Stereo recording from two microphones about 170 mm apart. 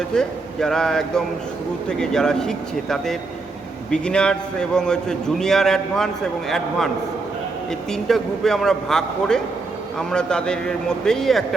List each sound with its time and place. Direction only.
0.1 s a man's voice: 5° left (ahead or behind)